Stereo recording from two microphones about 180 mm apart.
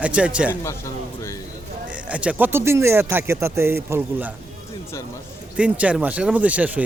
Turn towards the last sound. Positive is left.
turn(degrees=-10)  # may be behind; listen again after turning